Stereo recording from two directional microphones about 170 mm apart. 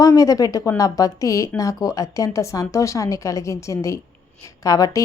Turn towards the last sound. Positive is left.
turn(degrees=20)  # may be behind; listen again after turning